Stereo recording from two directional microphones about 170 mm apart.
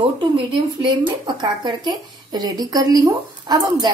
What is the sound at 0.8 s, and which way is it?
A woman's voice, 25° right (ahead or behind).